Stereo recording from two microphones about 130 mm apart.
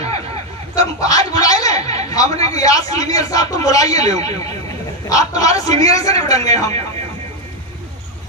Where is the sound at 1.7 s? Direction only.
55° right (ahead or behind).